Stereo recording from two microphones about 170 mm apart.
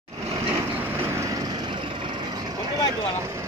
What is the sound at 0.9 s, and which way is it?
Vehicle, 15° right (ahead or behind).